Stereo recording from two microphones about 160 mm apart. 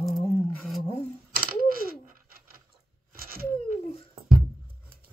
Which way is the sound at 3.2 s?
65° right (ahead or behind).